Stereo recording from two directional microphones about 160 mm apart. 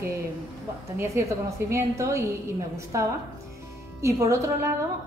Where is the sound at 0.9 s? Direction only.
20° right (ahead or behind).